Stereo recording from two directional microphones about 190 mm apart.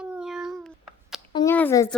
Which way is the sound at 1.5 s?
15° left (ahead or behind).